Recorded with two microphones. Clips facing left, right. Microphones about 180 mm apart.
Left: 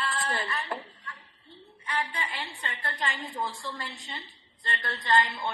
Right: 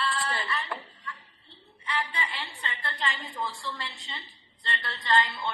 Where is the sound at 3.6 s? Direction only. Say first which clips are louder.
Even; 45° left (ahead or behind).